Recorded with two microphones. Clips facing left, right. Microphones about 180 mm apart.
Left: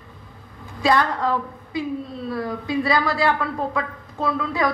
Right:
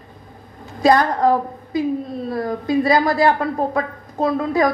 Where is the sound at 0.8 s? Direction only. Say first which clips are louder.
Right 5 dB; 45° right (ahead or behind).